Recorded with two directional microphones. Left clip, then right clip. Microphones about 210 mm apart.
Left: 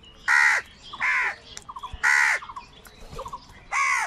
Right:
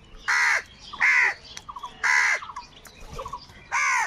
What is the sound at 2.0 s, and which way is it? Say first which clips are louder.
Crow: left 1 dB; 30° left (ahead or behind).